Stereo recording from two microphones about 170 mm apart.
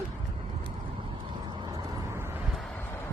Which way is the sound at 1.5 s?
25° right (ahead or behind).